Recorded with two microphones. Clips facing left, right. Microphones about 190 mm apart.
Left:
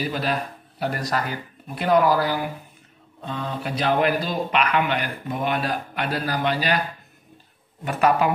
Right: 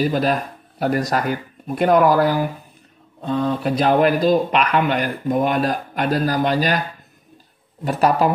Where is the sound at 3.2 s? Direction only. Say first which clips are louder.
Right 9 dB; 40° right (ahead or behind).